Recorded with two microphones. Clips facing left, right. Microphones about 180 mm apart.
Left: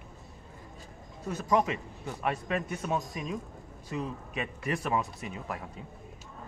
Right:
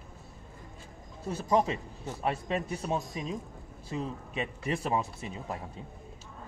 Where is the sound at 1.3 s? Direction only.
30° right (ahead or behind).